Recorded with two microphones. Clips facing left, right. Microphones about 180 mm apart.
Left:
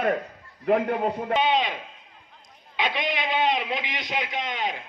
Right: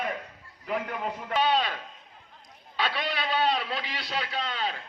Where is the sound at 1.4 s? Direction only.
15° left (ahead or behind).